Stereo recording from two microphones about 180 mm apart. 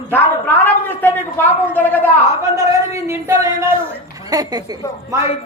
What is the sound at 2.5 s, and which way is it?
A woman's voice, 15° right (ahead or behind).